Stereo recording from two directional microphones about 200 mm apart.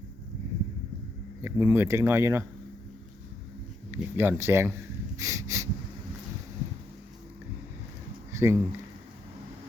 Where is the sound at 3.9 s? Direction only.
10° right (ahead or behind).